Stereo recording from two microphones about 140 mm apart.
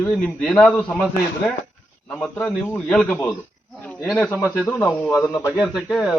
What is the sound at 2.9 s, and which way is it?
Speech, 5° left (ahead or behind).